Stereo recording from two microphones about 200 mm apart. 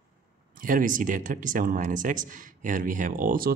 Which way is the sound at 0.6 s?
45° right (ahead or behind).